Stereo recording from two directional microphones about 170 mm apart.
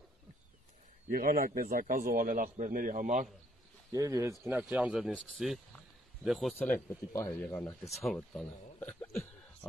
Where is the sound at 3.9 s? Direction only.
20° right (ahead or behind); by 7.7 s 15° left (ahead or behind).